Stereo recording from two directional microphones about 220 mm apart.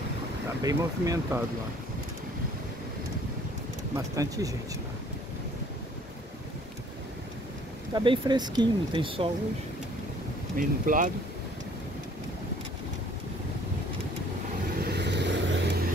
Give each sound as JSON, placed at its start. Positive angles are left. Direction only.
{"t": 0.6, "sound": "speech", "side_deg": -15}
{"t": 3.9, "sound": "speech", "side_deg": -15}
{"t": 7.9, "sound": "speech", "side_deg": -20}
{"t": 10.5, "sound": "speech", "side_deg": -40}
{"t": 14.8, "sound": "vehicle", "side_deg": -50}